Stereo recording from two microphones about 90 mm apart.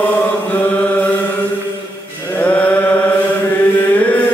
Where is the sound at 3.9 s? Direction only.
15° left (ahead or behind).